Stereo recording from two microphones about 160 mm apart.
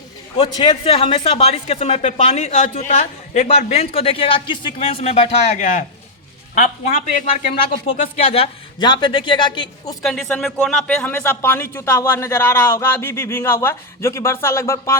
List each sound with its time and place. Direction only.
0.3 s a man's voice: 30° left (ahead or behind); by 7.1 s 55° left (ahead or behind)
7.9 s a man's voice: 40° left (ahead or behind)
10.0 s speech: 5° left (ahead or behind)